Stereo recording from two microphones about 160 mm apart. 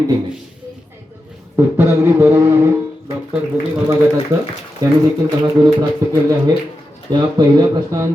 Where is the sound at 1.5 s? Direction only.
15° right (ahead or behind).